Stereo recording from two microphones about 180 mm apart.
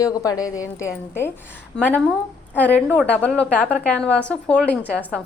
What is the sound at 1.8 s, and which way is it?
Speech, 5° left (ahead or behind).